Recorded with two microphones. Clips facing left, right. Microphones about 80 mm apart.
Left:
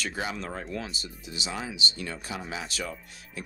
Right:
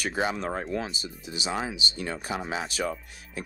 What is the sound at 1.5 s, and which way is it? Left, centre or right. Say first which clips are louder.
Speech: right 5 dB; right.